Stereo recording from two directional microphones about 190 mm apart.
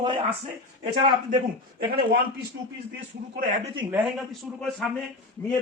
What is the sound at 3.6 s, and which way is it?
Speech, 25° right (ahead or behind).